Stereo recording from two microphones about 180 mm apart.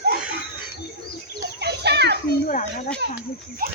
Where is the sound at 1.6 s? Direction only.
65° right (ahead or behind).